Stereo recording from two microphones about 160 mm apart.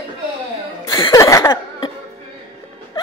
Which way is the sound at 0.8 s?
25° left (ahead or behind).